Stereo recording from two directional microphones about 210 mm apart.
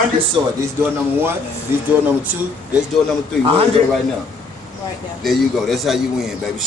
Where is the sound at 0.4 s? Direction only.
20° right (ahead or behind).